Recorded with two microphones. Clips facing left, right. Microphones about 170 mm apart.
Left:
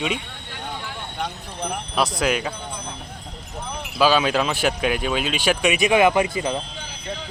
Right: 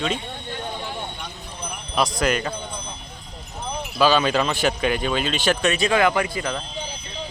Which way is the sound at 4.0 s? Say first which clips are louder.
Even; 5° left (ahead or behind).